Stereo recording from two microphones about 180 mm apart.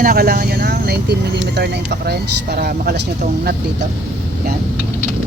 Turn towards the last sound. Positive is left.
turn(degrees=-60)  # may be behind; listen again after turning